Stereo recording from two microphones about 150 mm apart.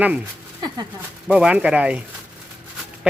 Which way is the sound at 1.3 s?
5° right (ahead or behind).